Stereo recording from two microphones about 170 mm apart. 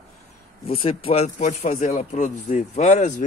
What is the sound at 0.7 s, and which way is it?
A man's voice, 35° left (ahead or behind).